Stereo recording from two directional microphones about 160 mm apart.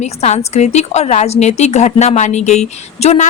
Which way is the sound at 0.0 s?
45° left (ahead or behind).